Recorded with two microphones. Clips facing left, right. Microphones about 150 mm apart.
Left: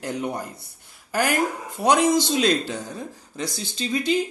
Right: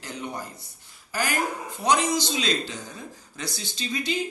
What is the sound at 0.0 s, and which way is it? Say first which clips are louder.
Speech: left 8 dB; 50° left (ahead or behind).